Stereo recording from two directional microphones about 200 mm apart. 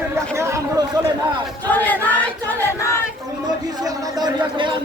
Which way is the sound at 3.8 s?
20° right (ahead or behind).